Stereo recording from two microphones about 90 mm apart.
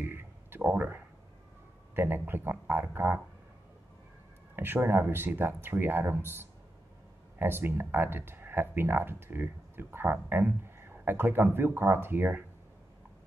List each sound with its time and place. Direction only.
0.0 s a sound: 25° right (ahead or behind)
2.0 s speech: 25° right (ahead or behind)
4.6 s speech: 25° right (ahead or behind)